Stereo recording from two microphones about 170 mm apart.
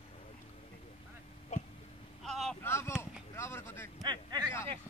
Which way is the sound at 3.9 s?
25° right (ahead or behind).